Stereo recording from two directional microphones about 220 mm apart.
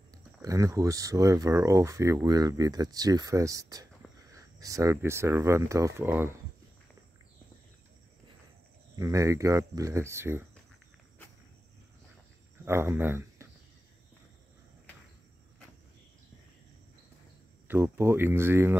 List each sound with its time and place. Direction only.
0.1 s speech: 15° right (ahead or behind)
8.9 s speech: 15° right (ahead or behind)
12.6 s speech: 10° right (ahead or behind)
17.6 s speech: 10° right (ahead or behind)